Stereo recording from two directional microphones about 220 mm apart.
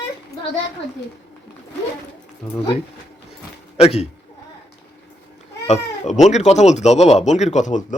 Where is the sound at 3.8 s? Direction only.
30° left (ahead or behind).